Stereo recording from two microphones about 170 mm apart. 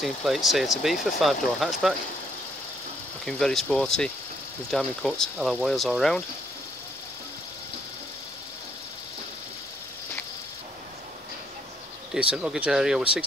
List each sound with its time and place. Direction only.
0.0 s speech: centre (ahead or behind)
3.3 s speech: 5° left (ahead or behind)
12.1 s speech: 5° right (ahead or behind)